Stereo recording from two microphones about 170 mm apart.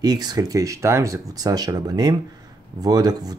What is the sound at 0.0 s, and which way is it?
Speech, 25° right (ahead or behind).